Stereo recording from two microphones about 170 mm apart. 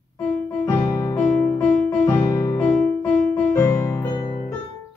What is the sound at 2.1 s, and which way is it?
Music, 15° left (ahead or behind).